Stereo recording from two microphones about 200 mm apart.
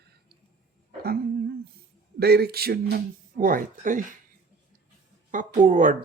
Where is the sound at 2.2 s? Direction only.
50° right (ahead or behind).